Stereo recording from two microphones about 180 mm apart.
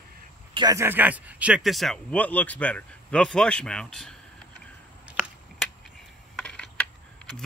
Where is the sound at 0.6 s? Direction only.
20° right (ahead or behind); by 4.1 s 5° left (ahead or behind).